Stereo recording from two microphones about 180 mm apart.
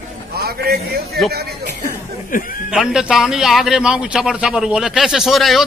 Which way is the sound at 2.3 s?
50° left (ahead or behind).